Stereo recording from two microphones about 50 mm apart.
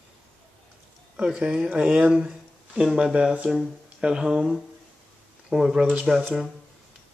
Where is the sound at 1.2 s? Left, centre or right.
Right.